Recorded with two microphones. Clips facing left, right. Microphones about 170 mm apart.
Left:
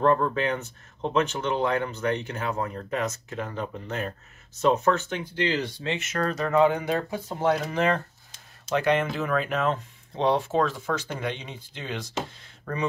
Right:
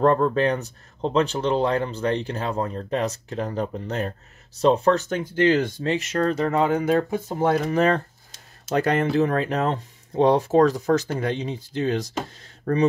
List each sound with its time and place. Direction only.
0.0 s speech: 35° right (ahead or behind)